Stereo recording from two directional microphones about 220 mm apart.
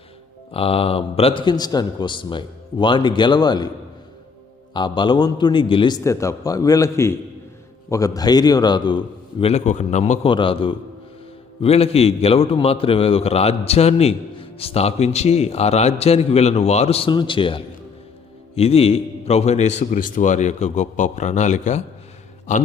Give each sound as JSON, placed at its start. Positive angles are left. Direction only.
{"t": 0.5, "sound": "a man's voice", "side_deg": 25}
{"t": 4.7, "sound": "a man's voice", "side_deg": 20}